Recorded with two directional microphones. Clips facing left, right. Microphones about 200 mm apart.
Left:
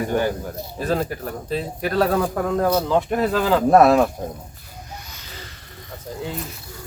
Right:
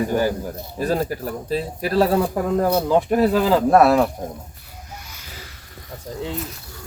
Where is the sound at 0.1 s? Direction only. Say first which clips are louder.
Right 1 dB; 5° right (ahead or behind).